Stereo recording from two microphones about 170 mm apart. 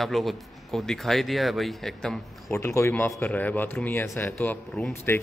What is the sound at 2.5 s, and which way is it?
Speech, 15° left (ahead or behind).